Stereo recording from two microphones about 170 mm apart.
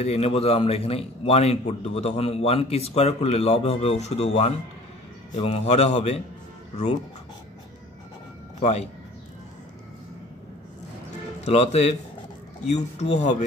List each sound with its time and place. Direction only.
0.0 s a man's voice: 35° left (ahead or behind)
8.5 s speech: 40° left (ahead or behind)
11.4 s a man's voice: 40° left (ahead or behind)